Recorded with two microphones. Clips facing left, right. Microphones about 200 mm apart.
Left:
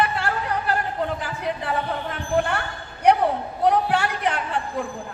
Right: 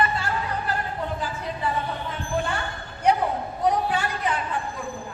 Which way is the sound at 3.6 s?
65° left (ahead or behind).